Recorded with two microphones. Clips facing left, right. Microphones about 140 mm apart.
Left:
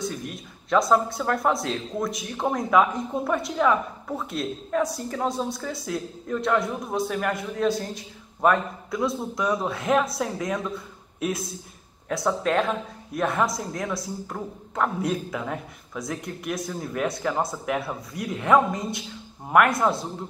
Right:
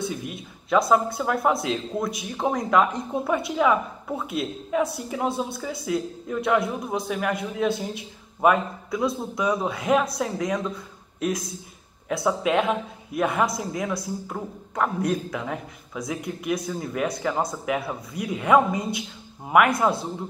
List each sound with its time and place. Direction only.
0.0 s a woman's voice: 5° right (ahead or behind)